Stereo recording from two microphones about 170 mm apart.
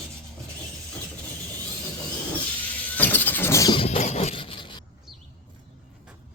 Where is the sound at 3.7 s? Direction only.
30° left (ahead or behind).